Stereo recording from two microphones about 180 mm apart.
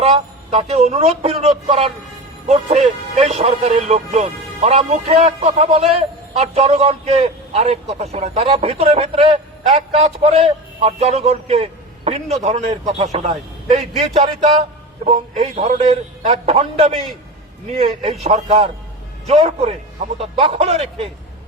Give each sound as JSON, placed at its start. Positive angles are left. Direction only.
{"t": 0.0, "sound": "a man's voice", "side_deg": -35}